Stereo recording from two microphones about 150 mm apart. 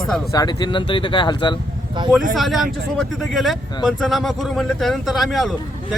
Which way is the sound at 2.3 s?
Centre (ahead or behind).